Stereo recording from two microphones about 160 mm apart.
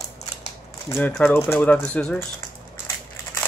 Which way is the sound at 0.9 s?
15° left (ahead or behind).